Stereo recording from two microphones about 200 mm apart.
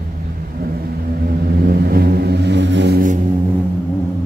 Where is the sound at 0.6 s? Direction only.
50° right (ahead or behind).